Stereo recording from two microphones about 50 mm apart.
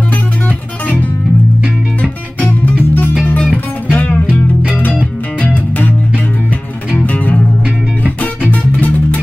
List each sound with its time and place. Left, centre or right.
2.6 s music: left
5.4 s music: left
7.0 s music: left